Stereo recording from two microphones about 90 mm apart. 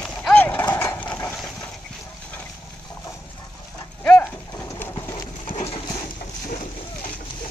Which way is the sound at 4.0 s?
15° left (ahead or behind).